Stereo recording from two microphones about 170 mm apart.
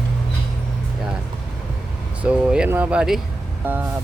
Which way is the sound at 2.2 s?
5° right (ahead or behind).